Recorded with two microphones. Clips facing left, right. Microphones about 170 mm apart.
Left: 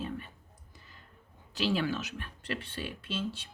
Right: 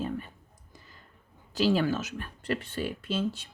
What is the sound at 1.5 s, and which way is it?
Speech, 40° right (ahead or behind).